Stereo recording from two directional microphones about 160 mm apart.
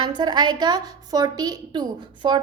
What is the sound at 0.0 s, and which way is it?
A woman's voice, 25° right (ahead or behind).